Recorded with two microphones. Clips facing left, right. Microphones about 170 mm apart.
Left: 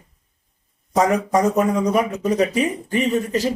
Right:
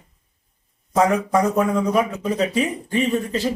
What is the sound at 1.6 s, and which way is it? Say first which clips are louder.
Speech: left 1 dB; 5° left (ahead or behind).